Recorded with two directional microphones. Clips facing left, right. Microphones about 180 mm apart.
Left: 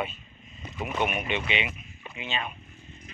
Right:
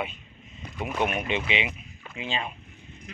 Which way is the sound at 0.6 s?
Centre (ahead or behind).